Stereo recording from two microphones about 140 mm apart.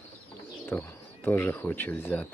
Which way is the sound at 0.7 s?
15° left (ahead or behind).